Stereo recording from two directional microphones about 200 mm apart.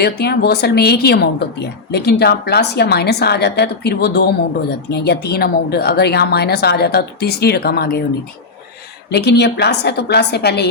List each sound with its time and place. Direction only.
0.0 s a woman's voice: 55° left (ahead or behind)
9.0 s a woman's voice: 55° left (ahead or behind)